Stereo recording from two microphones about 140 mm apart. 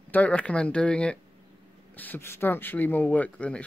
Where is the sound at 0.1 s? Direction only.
10° left (ahead or behind).